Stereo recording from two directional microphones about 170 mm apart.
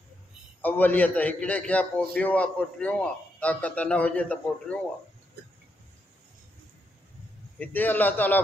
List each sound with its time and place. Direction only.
0.6 s a man's voice: 10° left (ahead or behind)
7.5 s a man's voice: 10° left (ahead or behind)